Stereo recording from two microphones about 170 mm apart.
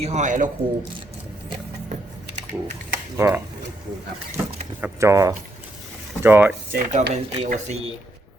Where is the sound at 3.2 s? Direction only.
15° right (ahead or behind).